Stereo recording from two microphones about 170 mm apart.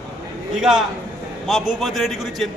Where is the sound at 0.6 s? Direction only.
Centre (ahead or behind).